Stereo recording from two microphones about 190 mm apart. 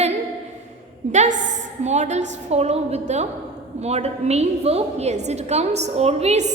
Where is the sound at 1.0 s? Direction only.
35° right (ahead or behind).